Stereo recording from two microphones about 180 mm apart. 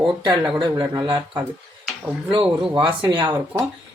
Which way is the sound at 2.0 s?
5° right (ahead or behind).